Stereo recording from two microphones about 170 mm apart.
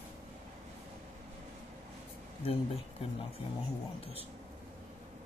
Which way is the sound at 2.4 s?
35° left (ahead or behind).